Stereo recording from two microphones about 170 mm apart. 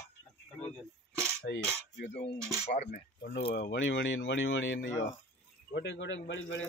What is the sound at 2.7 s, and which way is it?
Speech, 45° left (ahead or behind).